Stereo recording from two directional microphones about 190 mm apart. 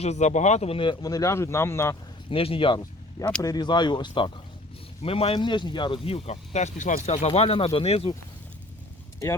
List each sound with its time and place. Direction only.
0.0 s speech: 35° left (ahead or behind); by 2.0 s 15° left (ahead or behind)
2.3 s speech: 30° left (ahead or behind)